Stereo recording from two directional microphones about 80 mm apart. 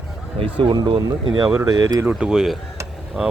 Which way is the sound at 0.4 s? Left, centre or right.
Right.